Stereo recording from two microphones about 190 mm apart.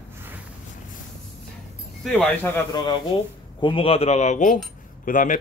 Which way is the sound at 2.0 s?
5° left (ahead or behind).